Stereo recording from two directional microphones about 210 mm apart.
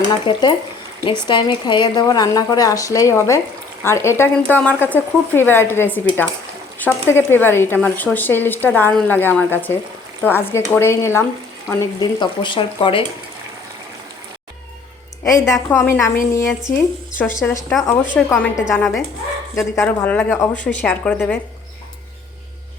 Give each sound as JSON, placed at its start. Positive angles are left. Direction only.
{"t": 0.3, "sound": "speech", "side_deg": 20}
{"t": 15.2, "sound": "speech", "side_deg": 15}